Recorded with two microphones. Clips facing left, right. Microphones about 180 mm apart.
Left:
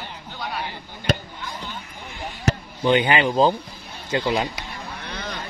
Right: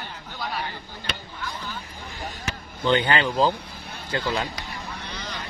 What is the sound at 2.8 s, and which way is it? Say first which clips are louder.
Speech: left 2 dB; 15° left (ahead or behind).